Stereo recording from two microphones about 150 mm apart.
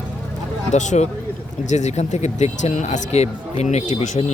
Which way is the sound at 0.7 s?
50° left (ahead or behind).